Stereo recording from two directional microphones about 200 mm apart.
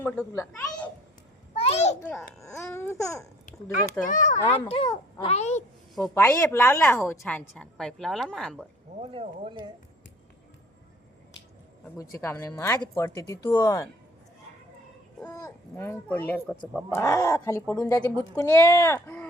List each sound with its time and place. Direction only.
0.0 s speech: 10° left (ahead or behind)
1.5 s a sound: 30° left (ahead or behind)
2.0 s a woman's voice: 5° left (ahead or behind)
4.0 s speech: 40° left (ahead or behind)
6.0 s a woman's voice: 15° left (ahead or behind)
9.0 s speech: 25° right (ahead or behind)
11.9 s speech: 15° left (ahead or behind)
15.2 s speech: 15° left (ahead or behind)